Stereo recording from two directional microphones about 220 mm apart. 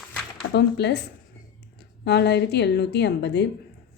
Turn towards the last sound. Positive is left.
turn(degrees=50)  # may be behind; listen again after turning